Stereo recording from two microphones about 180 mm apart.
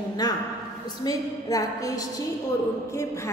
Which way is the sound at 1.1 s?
20° left (ahead or behind).